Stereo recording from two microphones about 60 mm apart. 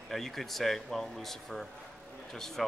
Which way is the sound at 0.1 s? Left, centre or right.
Centre.